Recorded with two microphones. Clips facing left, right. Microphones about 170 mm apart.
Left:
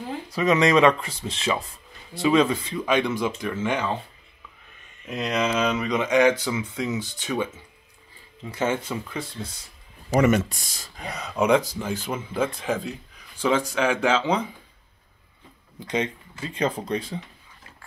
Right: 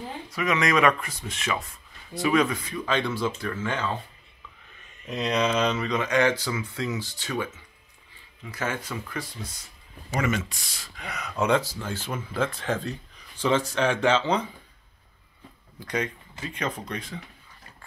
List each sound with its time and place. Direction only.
0.3 s speech: 30° left (ahead or behind)
2.8 s speech: 15° left (ahead or behind)
5.1 s speech: 5° left (ahead or behind); by 9.5 s 25° left (ahead or behind)
10.5 s speech: 45° left (ahead or behind)
11.3 s speech: 15° left (ahead or behind)
15.8 s speech: 25° left (ahead or behind)